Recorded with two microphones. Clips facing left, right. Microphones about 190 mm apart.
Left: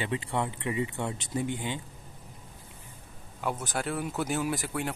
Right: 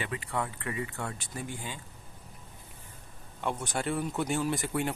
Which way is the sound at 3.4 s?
5° left (ahead or behind).